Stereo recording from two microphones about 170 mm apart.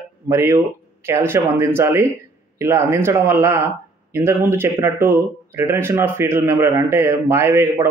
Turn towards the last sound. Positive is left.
turn(degrees=-15)  # may be behind; listen again after turning